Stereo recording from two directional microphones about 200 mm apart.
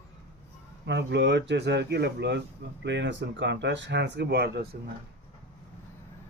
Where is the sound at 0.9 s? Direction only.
60° right (ahead or behind).